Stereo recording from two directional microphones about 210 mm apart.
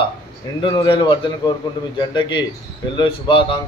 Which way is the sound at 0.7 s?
20° left (ahead or behind).